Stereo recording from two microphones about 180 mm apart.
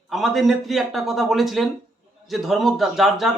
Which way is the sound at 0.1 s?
Centre (ahead or behind).